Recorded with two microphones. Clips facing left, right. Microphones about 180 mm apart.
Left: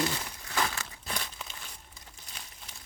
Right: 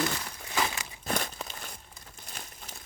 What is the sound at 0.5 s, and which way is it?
Crumpling, 15° right (ahead or behind).